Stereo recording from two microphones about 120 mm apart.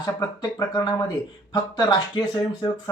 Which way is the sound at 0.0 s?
35° left (ahead or behind).